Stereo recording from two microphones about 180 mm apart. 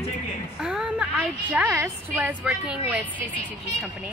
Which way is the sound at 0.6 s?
5° right (ahead or behind).